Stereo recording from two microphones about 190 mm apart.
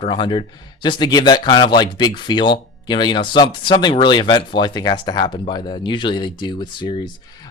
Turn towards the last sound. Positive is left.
turn(degrees=25)  # may be behind; listen again after turning